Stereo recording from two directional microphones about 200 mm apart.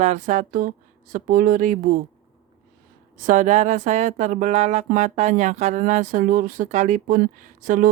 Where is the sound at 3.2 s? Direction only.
40° right (ahead or behind).